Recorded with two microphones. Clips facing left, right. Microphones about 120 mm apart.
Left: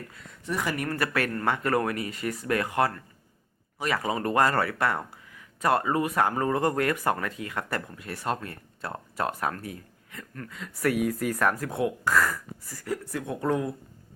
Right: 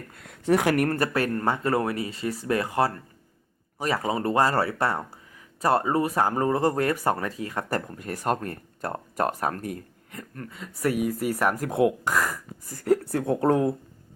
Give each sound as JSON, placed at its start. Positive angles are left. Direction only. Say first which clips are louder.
{"t": 0.1, "sound": "speech", "louder": "right 12 dB", "side_deg": -65}
{"t": 0.9, "sound": "speech", "louder": "right 3 dB", "side_deg": -35}
{"t": 10.3, "sound": "speech", "louder": "even", "side_deg": -30}
{"t": 10.9, "sound": "speech", "louder": "right 1 dB", "side_deg": -5}
{"t": 11.7, "sound": "speech", "louder": "right 3 dB", "side_deg": -25}
{"t": 12.7, "sound": "a woman's voice", "louder": "right 9 dB", "side_deg": -55}
{"t": 13.2, "sound": "speech", "louder": "right 6 dB", "side_deg": -35}